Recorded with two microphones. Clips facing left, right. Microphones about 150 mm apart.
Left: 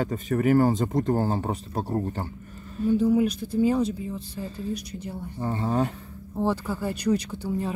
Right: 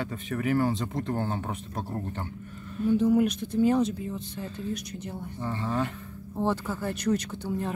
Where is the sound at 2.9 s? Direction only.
Centre (ahead or behind).